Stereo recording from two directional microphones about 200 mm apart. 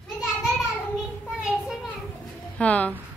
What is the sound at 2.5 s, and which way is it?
Speech, 5° left (ahead or behind).